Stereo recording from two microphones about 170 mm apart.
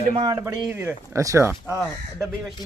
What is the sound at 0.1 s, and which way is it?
Speech, 30° right (ahead or behind).